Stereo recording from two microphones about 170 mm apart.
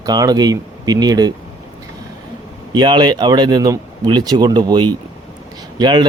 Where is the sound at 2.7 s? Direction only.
25° right (ahead or behind).